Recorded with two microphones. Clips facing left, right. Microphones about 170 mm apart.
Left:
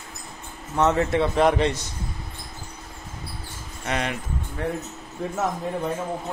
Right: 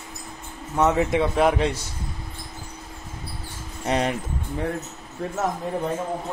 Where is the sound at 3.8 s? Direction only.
35° right (ahead or behind).